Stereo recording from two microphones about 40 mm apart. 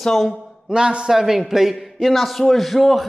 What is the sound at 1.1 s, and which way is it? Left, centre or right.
A man's voice, centre.